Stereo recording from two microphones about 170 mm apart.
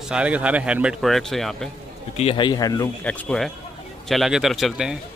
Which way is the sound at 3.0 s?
10° left (ahead or behind).